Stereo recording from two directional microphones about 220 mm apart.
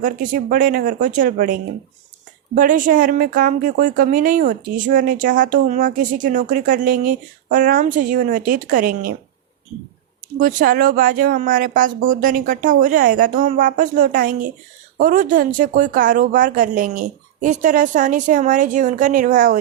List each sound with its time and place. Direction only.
0.0 s speech: 35° right (ahead or behind)
2.6 s speech: 40° right (ahead or behind)
10.4 s speech: 40° right (ahead or behind)